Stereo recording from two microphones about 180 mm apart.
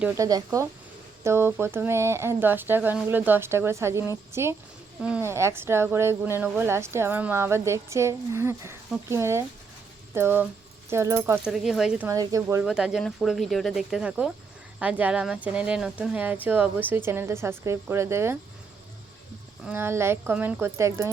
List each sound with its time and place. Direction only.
0.2 s speech: 20° right (ahead or behind); by 12.0 s 5° right (ahead or behind)
12.0 s speech: 20° right (ahead or behind)
12.6 s speech: 5° right (ahead or behind)
19.6 s speech: 10° right (ahead or behind)